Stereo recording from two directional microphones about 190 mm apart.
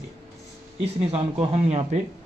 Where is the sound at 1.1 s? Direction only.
35° right (ahead or behind).